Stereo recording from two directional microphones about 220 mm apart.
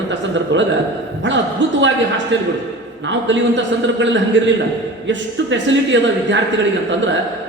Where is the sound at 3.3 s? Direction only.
55° right (ahead or behind).